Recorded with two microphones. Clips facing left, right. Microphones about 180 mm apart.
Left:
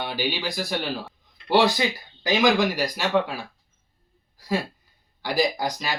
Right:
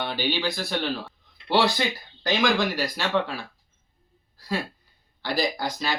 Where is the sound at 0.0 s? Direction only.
10° left (ahead or behind).